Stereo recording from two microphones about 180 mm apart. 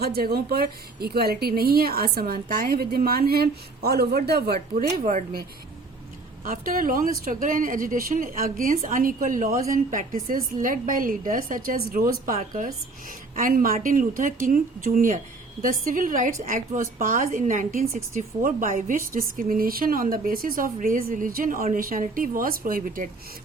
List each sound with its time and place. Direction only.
0.0 s a woman's voice: 60° right (ahead or behind)